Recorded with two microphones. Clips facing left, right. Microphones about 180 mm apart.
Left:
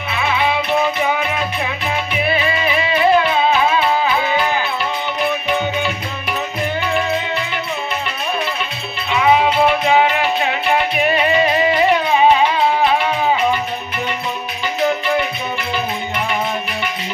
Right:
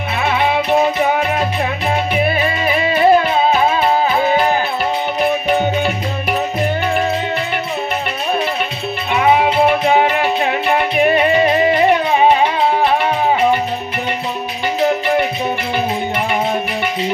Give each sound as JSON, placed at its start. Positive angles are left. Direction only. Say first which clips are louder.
{"t": 0.2, "sound": "music", "louder": "right 2 dB", "side_deg": -45}
{"t": 2.2, "sound": "music", "louder": "right 2 dB", "side_deg": -45}
{"t": 9.1, "sound": "music", "louder": "right 1 dB", "side_deg": -50}